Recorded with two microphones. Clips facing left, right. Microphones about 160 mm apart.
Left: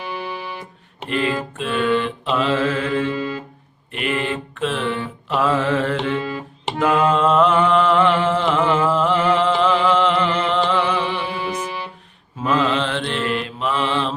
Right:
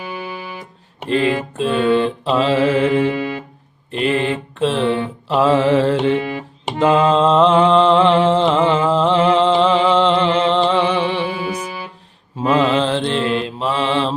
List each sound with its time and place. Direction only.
0.0 s music: 5° right (ahead or behind)
1.0 s mantra: 35° right (ahead or behind)
3.1 s music: 60° right (ahead or behind)
3.9 s mantra: 30° right (ahead or behind)
9.7 s a sound: 30° right (ahead or behind)
11.1 s music: centre (ahead or behind)
12.4 s mantra: 35° right (ahead or behind)